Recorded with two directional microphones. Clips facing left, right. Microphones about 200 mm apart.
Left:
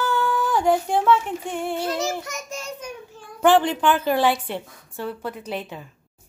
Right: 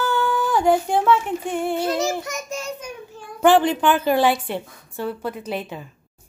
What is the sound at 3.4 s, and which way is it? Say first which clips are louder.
A woman's voice: right 2 dB; 10° right (ahead or behind).